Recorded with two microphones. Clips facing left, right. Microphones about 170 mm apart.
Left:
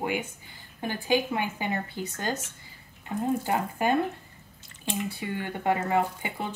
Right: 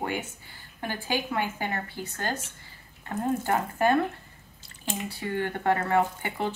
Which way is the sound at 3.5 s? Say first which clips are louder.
Right 5 dB; 15° left (ahead or behind).